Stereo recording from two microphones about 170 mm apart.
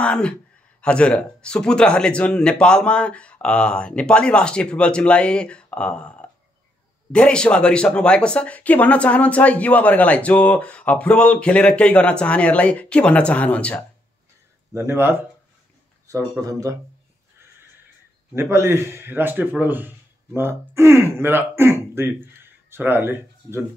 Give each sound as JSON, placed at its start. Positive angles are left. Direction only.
{"t": 0.0, "sound": "speech", "side_deg": 5}
{"t": 14.7, "sound": "speech", "side_deg": -15}
{"t": 18.3, "sound": "speech", "side_deg": -15}